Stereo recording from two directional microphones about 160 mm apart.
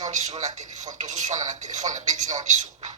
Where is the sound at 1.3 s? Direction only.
50° right (ahead or behind).